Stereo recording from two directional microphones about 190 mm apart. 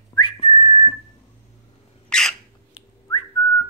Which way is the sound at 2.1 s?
5° left (ahead or behind).